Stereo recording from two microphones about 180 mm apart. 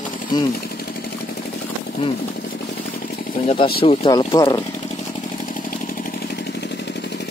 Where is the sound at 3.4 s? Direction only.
35° left (ahead or behind).